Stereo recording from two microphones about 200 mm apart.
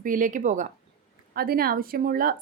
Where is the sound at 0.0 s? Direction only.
40° right (ahead or behind).